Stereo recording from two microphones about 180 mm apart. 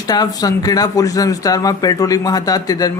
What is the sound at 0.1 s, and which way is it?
Speech, 20° left (ahead or behind).